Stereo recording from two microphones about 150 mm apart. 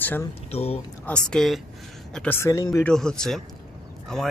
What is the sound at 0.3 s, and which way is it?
Speech, 40° left (ahead or behind).